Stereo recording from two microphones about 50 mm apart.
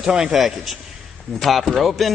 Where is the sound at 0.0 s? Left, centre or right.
Centre.